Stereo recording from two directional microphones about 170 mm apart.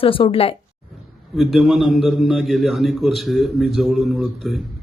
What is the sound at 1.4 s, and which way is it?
A man's voice, centre (ahead or behind).